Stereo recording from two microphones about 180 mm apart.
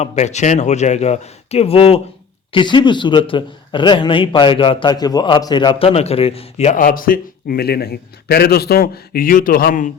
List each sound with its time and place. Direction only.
0.0 s speech: 40° left (ahead or behind)
6.7 s a man's voice: 50° left (ahead or behind)